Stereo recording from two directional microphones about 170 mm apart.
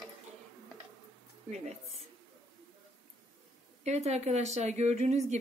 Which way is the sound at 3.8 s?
40° right (ahead or behind).